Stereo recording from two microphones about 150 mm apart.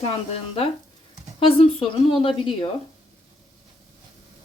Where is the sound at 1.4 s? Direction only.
35° left (ahead or behind).